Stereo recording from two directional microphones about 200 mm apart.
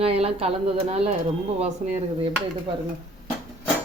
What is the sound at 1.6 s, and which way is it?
Speech, 35° right (ahead or behind).